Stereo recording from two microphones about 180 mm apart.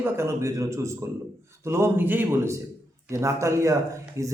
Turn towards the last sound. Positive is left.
turn(degrees=-15)  # may be behind; listen again after turning